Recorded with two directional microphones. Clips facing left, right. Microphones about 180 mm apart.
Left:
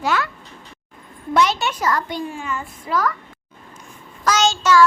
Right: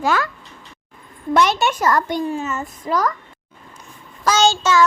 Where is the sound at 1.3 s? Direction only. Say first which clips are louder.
Right 2 dB; 50° right (ahead or behind).